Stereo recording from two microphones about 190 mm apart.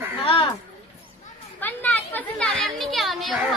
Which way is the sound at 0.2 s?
30° left (ahead or behind).